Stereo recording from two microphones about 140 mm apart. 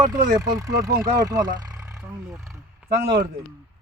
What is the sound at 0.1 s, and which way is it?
Speech, 25° right (ahead or behind).